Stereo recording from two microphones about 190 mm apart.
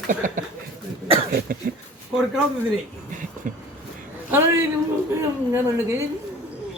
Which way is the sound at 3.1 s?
45° right (ahead or behind).